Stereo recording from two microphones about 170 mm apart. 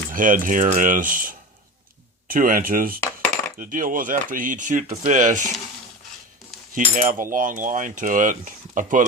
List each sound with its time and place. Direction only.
0.1 s cutlery: 55° right (ahead or behind)
2.2 s speech: 55° right (ahead or behind)
3.6 s cutlery: 50° right (ahead or behind)
6.7 s cutlery: 50° right (ahead or behind)